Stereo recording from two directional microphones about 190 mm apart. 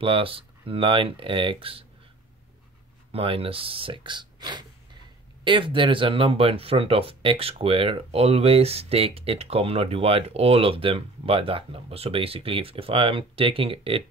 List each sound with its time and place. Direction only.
0.0 s speech: 30° right (ahead or behind)
3.1 s speech: 30° right (ahead or behind)